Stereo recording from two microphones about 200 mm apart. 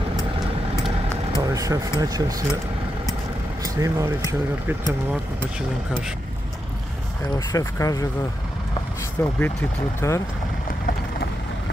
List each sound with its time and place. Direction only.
1.3 s speech: 15° right (ahead or behind)
3.6 s speech: 15° right (ahead or behind)
7.3 s speech: 15° left (ahead or behind)
9.2 s speech: 10° left (ahead or behind)